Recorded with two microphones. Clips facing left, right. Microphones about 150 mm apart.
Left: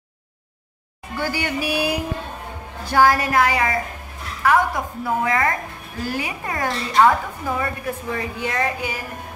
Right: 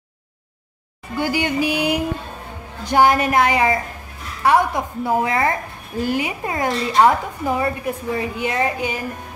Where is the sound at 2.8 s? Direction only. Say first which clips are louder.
Right 2 dB; 20° right (ahead or behind).